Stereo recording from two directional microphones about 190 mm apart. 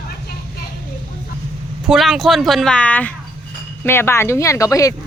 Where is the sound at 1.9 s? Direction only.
Centre (ahead or behind).